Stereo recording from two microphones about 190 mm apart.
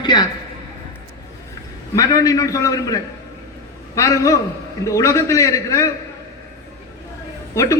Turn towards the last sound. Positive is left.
turn(degrees=15)  # may be behind; listen again after turning